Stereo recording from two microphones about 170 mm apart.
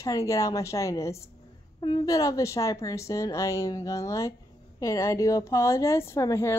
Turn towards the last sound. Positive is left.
turn(degrees=15)  # may be behind; listen again after turning